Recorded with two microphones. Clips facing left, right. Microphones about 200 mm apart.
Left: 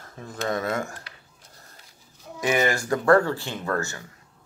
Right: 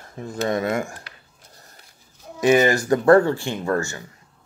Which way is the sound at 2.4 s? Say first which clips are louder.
Right 7 dB; 25° right (ahead or behind).